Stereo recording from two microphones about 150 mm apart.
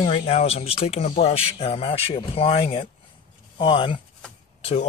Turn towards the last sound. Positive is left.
turn(degrees=45)  # may be behind; listen again after turning